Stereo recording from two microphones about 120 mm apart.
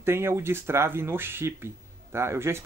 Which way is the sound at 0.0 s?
20° right (ahead or behind).